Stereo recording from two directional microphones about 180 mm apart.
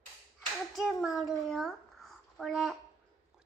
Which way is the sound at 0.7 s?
Centre (ahead or behind).